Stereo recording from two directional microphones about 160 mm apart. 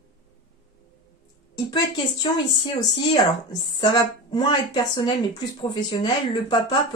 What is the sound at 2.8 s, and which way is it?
Speech, 25° left (ahead or behind).